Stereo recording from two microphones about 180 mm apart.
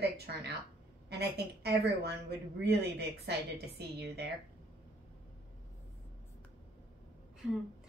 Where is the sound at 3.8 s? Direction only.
65° right (ahead or behind).